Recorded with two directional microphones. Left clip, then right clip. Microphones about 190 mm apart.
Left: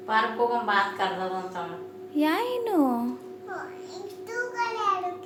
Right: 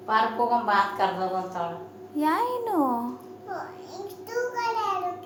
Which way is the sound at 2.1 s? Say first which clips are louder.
Right 1 dB; 35° left (ahead or behind).